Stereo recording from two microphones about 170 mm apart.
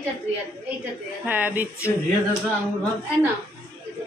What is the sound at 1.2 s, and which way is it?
Speech, 10° right (ahead or behind).